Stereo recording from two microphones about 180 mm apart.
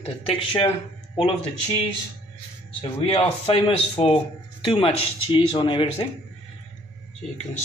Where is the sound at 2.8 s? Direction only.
30° left (ahead or behind).